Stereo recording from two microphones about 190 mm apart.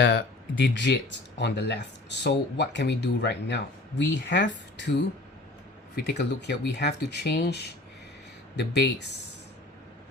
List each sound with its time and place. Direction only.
0.0 s speech: 70° left (ahead or behind)
6.0 s speech: 60° left (ahead or behind)